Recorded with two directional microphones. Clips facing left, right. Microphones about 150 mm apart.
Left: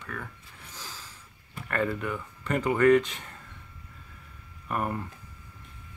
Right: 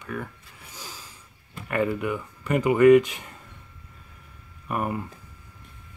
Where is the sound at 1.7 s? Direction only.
15° right (ahead or behind).